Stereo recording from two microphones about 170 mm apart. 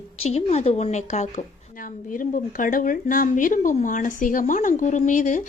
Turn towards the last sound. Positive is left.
turn(degrees=45)  # may be behind; listen again after turning